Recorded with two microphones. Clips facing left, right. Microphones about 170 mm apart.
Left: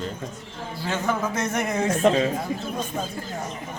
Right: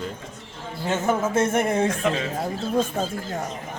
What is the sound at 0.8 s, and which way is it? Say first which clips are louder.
A man's voice: right 3 dB; 20° right (ahead or behind).